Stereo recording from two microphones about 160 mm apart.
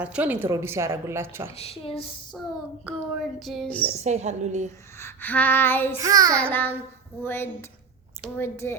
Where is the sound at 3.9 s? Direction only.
45° right (ahead or behind).